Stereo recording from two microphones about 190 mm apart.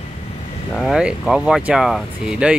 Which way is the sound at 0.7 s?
Centre (ahead or behind).